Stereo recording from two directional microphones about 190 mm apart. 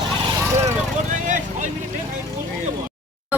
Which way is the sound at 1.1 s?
40° right (ahead or behind).